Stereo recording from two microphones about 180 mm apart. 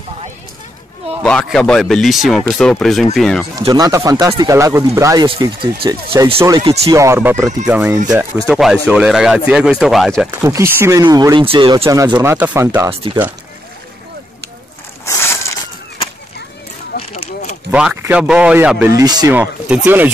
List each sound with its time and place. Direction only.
1.2 s a man's voice: 5° left (ahead or behind)
3.5 s speech: 20° right (ahead or behind)
8.5 s a man's voice: centre (ahead or behind)
10.4 s speech: 15° right (ahead or behind)
11.8 s speech: 20° right (ahead or behind)
12.9 s speech: 30° right (ahead or behind)
15.0 s crushing: 15° left (ahead or behind)
17.1 s a sound: 35° left (ahead or behind)
17.6 s speech: 10° right (ahead or behind)
19.3 s speech: 10° right (ahead or behind)